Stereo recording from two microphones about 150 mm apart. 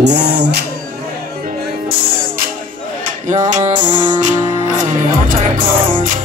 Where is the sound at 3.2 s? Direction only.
55° right (ahead or behind).